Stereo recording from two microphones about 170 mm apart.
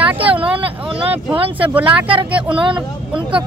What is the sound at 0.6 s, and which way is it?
Vehicle, 30° right (ahead or behind).